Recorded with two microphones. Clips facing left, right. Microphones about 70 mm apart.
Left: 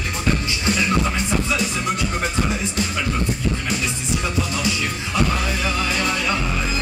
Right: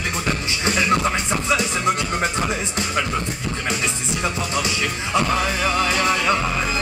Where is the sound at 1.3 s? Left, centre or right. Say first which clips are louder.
Right 1 dB; right.